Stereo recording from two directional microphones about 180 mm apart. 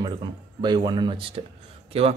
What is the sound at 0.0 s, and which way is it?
Speech, 25° right (ahead or behind).